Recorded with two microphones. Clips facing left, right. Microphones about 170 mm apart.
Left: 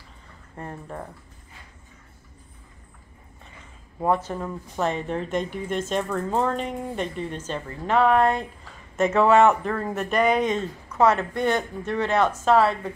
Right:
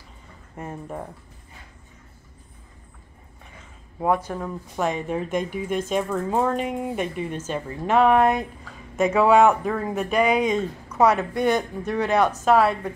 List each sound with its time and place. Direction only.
0.7 s speech: 10° right (ahead or behind)
4.0 s speech: 10° right (ahead or behind)